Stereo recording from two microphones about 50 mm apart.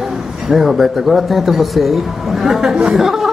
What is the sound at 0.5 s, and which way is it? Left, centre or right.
A man's voice, centre.